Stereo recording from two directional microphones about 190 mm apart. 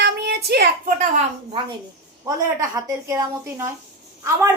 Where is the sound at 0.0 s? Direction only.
65° right (ahead or behind).